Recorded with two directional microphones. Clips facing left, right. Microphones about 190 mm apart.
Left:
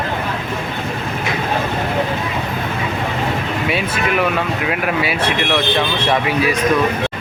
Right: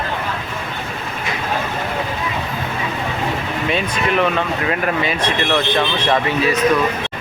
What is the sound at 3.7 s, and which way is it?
Speech, 5° left (ahead or behind).